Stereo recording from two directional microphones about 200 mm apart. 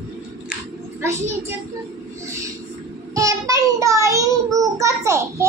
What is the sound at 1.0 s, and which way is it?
Speech, 10° right (ahead or behind).